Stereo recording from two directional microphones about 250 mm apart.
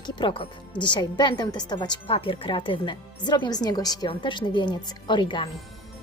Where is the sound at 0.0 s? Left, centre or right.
Centre.